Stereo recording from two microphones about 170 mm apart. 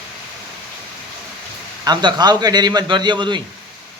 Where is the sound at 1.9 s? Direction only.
25° right (ahead or behind).